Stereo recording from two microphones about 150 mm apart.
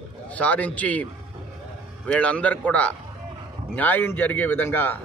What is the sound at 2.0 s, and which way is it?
Speech, 10° left (ahead or behind).